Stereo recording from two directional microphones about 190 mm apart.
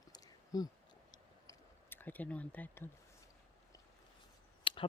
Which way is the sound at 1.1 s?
15° left (ahead or behind).